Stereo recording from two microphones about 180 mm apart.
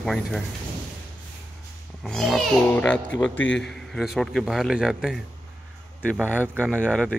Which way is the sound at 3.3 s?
90° left.